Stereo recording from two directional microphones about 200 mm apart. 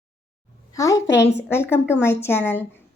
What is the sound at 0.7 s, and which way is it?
A child's voice, 15° left (ahead or behind).